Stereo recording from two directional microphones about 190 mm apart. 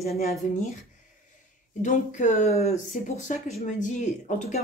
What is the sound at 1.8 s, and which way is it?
Speech, 40° left (ahead or behind).